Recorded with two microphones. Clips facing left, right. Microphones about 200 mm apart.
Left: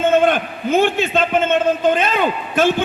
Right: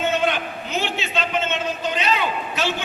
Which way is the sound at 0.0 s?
50° left (ahead or behind).